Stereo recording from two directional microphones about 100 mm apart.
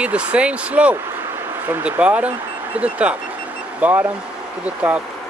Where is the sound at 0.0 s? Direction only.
10° right (ahead or behind).